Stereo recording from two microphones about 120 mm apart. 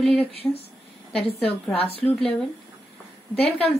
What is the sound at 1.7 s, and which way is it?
Speech, 55° left (ahead or behind).